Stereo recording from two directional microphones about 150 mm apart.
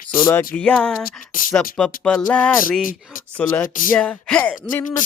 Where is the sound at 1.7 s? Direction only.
5° left (ahead or behind).